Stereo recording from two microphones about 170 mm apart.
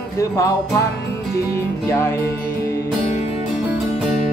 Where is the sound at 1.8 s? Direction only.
15° left (ahead or behind).